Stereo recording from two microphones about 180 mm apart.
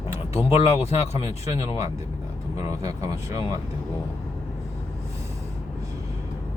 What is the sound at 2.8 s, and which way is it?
Speech, 20° right (ahead or behind).